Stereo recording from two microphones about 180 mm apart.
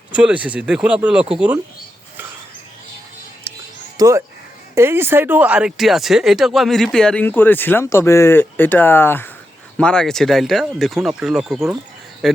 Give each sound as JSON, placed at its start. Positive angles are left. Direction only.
{"t": 0.1, "sound": "speech", "side_deg": -5}
{"t": 3.5, "sound": "music", "side_deg": -10}
{"t": 3.9, "sound": "speech", "side_deg": -15}